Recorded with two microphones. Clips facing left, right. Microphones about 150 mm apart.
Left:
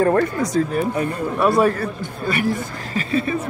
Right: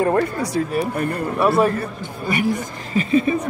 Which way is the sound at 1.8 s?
20° right (ahead or behind).